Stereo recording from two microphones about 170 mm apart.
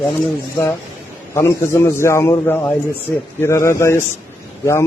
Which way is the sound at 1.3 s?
15° left (ahead or behind).